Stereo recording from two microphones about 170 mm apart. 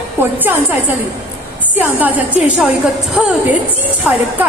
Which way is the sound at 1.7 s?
10° right (ahead or behind).